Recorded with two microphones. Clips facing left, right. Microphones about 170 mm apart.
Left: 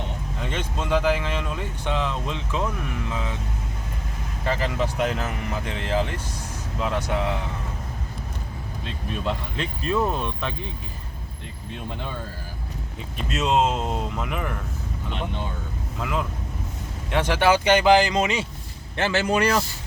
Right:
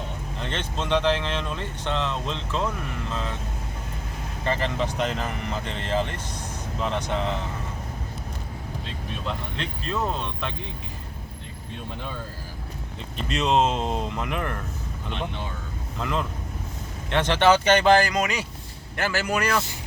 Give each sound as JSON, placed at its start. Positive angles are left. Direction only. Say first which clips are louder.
{"t": 0.4, "sound": "speech", "louder": "left 1 dB", "side_deg": 10}
{"t": 4.4, "sound": "speech", "louder": "left 1 dB", "side_deg": 5}
{"t": 9.6, "sound": "speech", "louder": "left 4 dB", "side_deg": 10}
{"t": 13.1, "sound": "speech", "louder": "even", "side_deg": 5}
{"t": 16.0, "sound": "a man's voice", "louder": "even", "side_deg": 5}